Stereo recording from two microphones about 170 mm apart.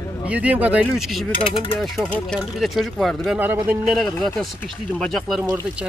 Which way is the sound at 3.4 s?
10° right (ahead or behind).